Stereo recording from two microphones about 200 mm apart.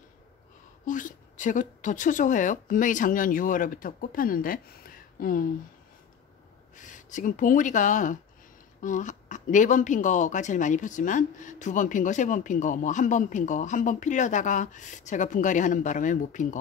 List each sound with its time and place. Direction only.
0.8 s speech: 40° left (ahead or behind)
6.8 s speech: 40° left (ahead or behind)